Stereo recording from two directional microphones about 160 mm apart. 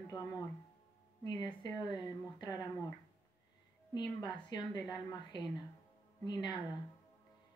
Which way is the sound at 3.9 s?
25° left (ahead or behind).